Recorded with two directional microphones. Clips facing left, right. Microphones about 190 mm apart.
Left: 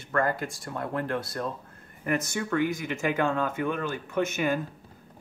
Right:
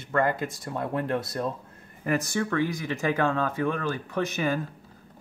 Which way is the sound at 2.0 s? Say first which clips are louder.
Right 2 dB; 35° right (ahead or behind).